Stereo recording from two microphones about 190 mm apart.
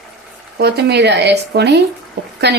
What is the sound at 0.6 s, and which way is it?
Speech, 60° right (ahead or behind).